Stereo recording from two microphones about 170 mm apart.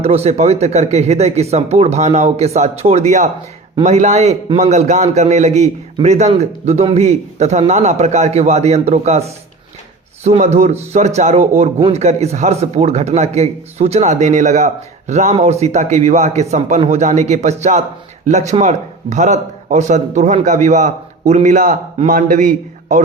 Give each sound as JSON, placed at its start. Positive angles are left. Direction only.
{"t": 0.0, "sound": "a man's voice", "side_deg": -40}